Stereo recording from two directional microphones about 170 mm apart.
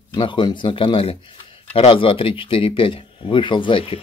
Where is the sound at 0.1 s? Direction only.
25° left (ahead or behind).